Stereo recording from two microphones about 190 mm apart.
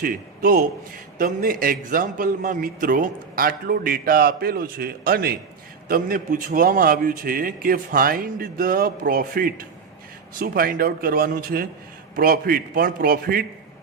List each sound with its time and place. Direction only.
0.0 s a man's voice: 50° right (ahead or behind)